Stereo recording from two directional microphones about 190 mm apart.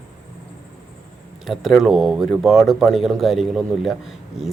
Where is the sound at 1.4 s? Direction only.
Centre (ahead or behind).